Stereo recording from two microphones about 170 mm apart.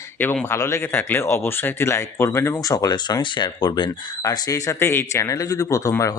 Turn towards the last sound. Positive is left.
turn(degrees=20)  # may be behind; listen again after turning